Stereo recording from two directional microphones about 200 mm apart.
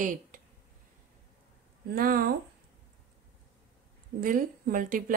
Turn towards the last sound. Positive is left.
turn(degrees=-40)  # may be behind; listen again after turning